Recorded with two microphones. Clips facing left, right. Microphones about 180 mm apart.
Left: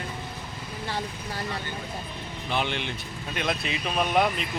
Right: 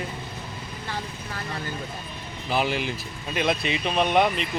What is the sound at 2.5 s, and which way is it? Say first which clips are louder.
Speech: right 4 dB; 5° right (ahead or behind).